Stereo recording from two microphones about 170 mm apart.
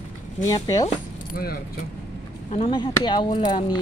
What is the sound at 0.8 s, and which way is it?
Speech, 60° left (ahead or behind).